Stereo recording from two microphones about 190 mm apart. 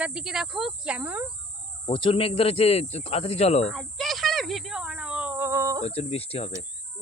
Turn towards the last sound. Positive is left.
turn(degrees=30)  # may be behind; listen again after turning